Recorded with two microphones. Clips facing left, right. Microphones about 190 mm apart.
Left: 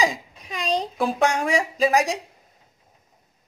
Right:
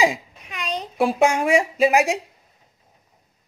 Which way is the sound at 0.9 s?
10° right (ahead or behind).